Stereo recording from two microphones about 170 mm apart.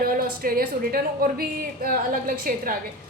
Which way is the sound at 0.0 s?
60° right (ahead or behind).